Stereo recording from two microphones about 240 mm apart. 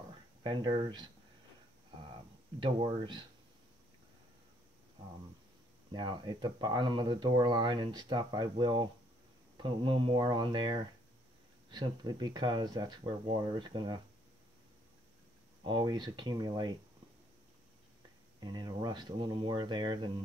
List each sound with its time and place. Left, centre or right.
0.4 s speech: centre
2.6 s speech: centre
5.9 s speech: centre
15.6 s speech: centre
18.4 s speech: centre